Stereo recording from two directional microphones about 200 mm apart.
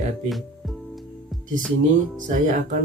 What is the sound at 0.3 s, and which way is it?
Speech, centre (ahead or behind).